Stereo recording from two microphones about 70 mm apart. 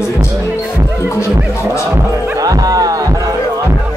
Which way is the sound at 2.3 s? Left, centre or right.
Right.